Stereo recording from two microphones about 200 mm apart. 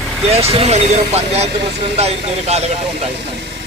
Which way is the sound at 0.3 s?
30° right (ahead or behind).